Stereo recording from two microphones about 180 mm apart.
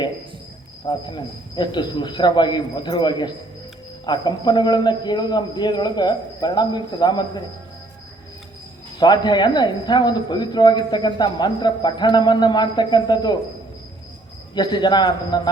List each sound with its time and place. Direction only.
0.9 s a man's voice: 25° left (ahead or behind)
9.0 s a man's voice: 25° left (ahead or behind)
14.5 s a man's voice: 25° left (ahead or behind)